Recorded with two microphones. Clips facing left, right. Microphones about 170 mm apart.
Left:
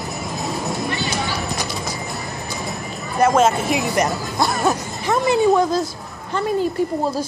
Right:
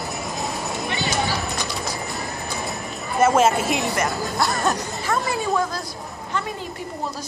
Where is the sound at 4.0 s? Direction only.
15° left (ahead or behind).